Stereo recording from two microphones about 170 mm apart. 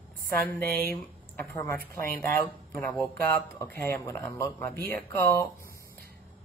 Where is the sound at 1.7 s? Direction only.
55° right (ahead or behind).